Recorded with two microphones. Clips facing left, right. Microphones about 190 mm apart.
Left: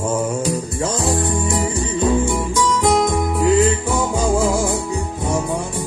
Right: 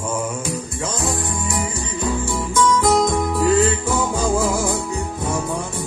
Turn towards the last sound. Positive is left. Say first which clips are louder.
# left 2 dB
turn(degrees=20)  # may be behind; listen again after turning